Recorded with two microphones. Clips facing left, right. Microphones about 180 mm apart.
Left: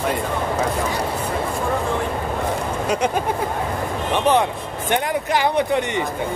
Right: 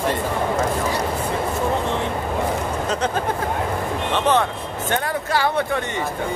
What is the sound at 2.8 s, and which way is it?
Speech, 15° left (ahead or behind).